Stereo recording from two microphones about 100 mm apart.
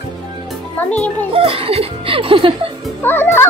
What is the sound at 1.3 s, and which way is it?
Speech, 70° right (ahead or behind).